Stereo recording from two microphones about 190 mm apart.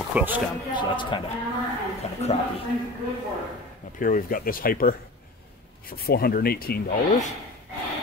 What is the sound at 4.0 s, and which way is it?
Speech, 45° left (ahead or behind).